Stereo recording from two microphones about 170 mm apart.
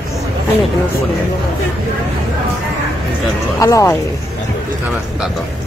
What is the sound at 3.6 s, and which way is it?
Speech, 20° left (ahead or behind).